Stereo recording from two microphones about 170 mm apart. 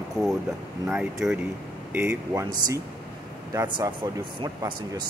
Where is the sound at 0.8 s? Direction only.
5° right (ahead or behind).